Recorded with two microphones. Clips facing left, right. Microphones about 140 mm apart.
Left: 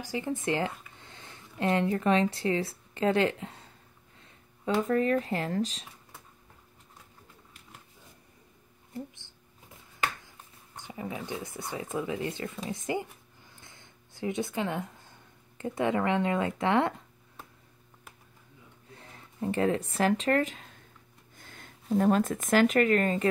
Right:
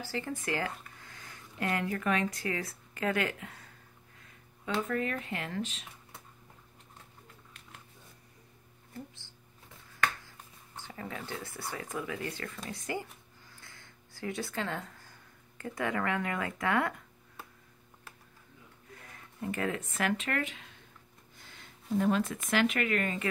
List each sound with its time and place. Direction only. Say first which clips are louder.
0.0 s speech: left 5 dB; 15° left (ahead or behind); by 5.9 s 35° left (ahead or behind)
8.9 s speech: left 5 dB; 20° left (ahead or behind)
10.8 s speech: left 4 dB; 15° left (ahead or behind)
18.9 s a sound: left 2 dB; 30° left (ahead or behind)
19.9 s speech: left 7 dB; 35° left (ahead or behind)